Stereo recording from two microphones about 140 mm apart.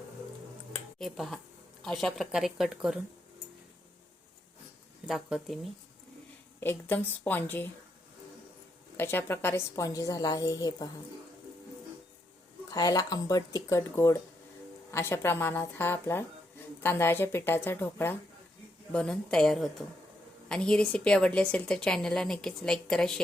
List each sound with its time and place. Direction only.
0.9 s a woman's voice: centre (ahead or behind)
5.0 s a woman's voice: 5° right (ahead or behind)
6.6 s a woman's voice: 15° left (ahead or behind)
9.0 s a woman's voice: 15° left (ahead or behind)
12.7 s a woman's voice: 25° left (ahead or behind); by 23.2 s 5° left (ahead or behind)